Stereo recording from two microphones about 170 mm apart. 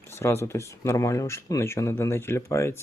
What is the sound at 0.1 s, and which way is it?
Speech, 15° left (ahead or behind).